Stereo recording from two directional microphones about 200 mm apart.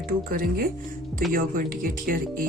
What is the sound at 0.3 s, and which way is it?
Speech, 45° right (ahead or behind).